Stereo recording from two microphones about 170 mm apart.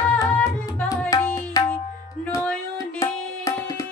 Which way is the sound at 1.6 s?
20° left (ahead or behind).